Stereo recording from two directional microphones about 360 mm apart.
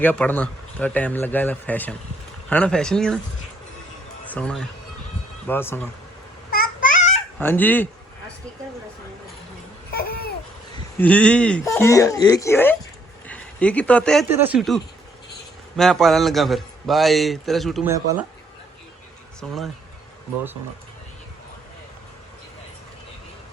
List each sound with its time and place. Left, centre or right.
0.0 s a man's voice: centre
4.3 s a man's voice: centre
6.5 s babbling: left
7.3 s a man's voice: centre
9.9 s babbling: left
10.9 s a man's voice: centre
19.4 s a man's voice: centre